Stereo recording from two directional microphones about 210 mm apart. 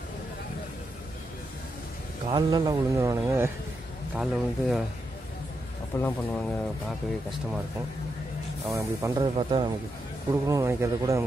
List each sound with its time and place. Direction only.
2.2 s speech: 20° right (ahead or behind)
4.2 s speech: centre (ahead or behind)
5.9 s speech: 10° left (ahead or behind)
8.7 s speech: 20° right (ahead or behind)